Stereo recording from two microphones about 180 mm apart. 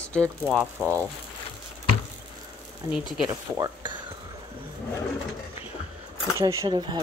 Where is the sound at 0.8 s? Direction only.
10° right (ahead or behind).